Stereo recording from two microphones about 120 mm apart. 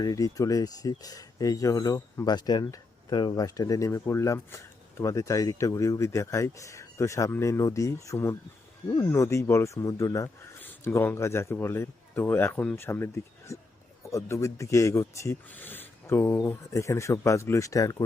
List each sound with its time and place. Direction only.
0.0 s a man's voice: 30° left (ahead or behind)